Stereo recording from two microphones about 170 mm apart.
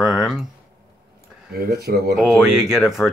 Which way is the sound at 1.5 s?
70° right (ahead or behind).